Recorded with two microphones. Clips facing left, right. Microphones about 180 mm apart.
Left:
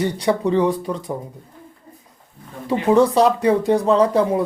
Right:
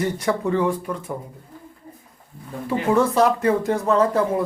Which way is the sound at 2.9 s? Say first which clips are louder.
Left 3 dB; 15° left (ahead or behind).